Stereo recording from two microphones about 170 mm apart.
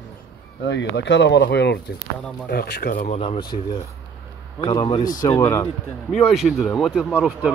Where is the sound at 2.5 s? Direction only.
70° left (ahead or behind).